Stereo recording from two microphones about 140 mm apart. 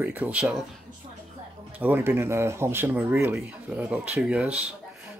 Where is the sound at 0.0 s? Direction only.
10° right (ahead or behind).